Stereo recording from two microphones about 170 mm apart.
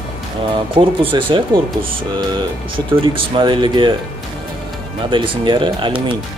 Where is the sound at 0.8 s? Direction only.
30° right (ahead or behind).